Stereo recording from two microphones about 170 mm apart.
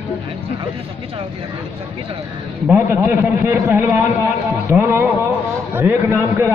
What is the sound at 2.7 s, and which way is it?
A man's voice, 15° right (ahead or behind).